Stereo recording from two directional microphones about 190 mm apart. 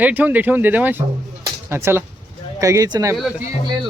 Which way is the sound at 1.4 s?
10° right (ahead or behind).